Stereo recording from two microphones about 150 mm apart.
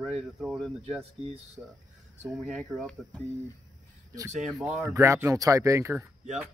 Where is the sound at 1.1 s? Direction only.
45° right (ahead or behind).